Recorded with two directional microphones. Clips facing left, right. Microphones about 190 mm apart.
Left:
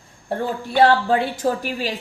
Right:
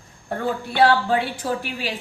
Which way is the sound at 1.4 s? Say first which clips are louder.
Left 4 dB; 40° left (ahead or behind).